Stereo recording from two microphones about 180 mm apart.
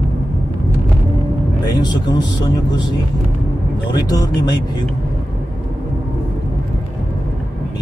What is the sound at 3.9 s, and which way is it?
Speech, 20° left (ahead or behind).